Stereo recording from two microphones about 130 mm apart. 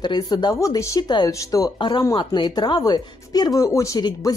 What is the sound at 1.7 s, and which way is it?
Speech, 40° left (ahead or behind).